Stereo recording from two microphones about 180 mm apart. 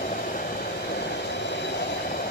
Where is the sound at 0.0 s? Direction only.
55° left (ahead or behind).